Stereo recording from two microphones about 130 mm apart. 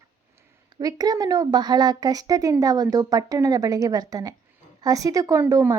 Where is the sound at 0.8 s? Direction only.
30° right (ahead or behind).